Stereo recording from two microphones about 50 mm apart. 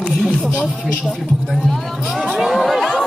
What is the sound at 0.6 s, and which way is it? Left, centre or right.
Speech, centre.